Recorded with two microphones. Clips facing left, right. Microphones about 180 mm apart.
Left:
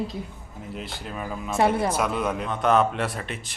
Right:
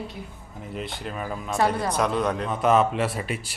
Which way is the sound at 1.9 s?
5° left (ahead or behind).